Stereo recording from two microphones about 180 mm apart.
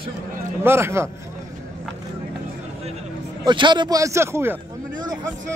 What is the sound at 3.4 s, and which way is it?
Speech, 25° right (ahead or behind).